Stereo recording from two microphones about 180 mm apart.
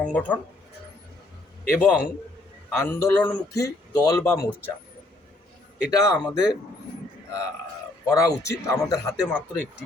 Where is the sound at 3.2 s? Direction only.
20° left (ahead or behind).